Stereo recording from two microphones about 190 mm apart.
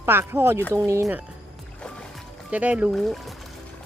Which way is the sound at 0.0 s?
10° right (ahead or behind).